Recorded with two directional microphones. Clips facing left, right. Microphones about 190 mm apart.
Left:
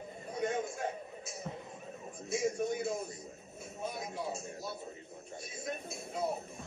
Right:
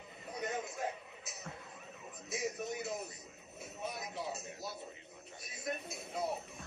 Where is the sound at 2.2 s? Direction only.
30° left (ahead or behind).